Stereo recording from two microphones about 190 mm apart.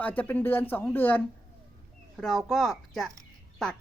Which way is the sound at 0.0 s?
10° left (ahead or behind).